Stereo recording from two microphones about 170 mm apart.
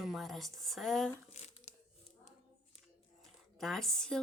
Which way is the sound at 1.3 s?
40° left (ahead or behind).